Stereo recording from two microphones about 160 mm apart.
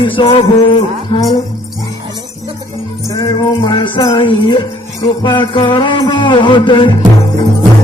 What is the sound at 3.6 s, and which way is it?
Music, 30° left (ahead or behind).